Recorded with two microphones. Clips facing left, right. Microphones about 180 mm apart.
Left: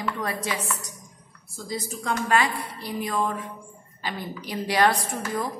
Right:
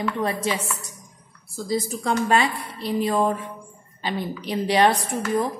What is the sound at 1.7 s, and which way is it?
A woman's voice, 30° right (ahead or behind).